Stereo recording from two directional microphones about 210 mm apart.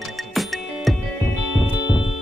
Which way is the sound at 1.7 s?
60° left (ahead or behind).